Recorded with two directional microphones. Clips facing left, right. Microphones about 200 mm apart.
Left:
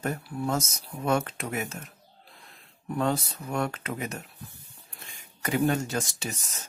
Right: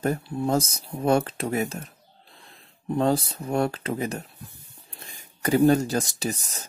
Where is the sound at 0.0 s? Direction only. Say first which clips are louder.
Right 5 dB; 30° right (ahead or behind).